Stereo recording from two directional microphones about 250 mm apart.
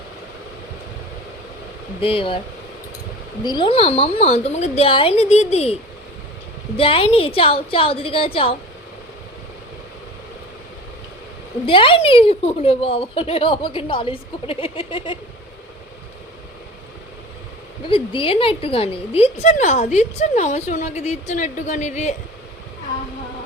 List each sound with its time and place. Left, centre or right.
2.0 s a woman's voice: left
3.4 s a woman's voice: centre
6.7 s a woman's voice: left
11.6 s a woman's voice: left
17.8 s a woman's voice: centre